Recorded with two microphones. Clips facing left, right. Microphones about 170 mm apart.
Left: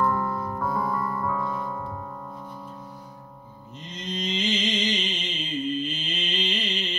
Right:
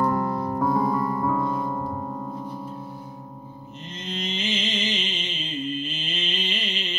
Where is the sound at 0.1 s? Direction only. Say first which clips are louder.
Right 3 dB; 20° right (ahead or behind).